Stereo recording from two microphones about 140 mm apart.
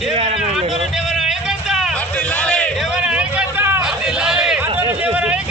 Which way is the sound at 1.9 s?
10° left (ahead or behind).